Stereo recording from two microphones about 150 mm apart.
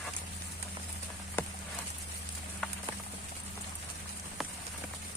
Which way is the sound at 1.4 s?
15° left (ahead or behind).